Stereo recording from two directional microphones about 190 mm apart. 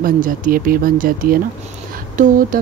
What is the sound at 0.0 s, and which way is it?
Speech, 45° right (ahead or behind).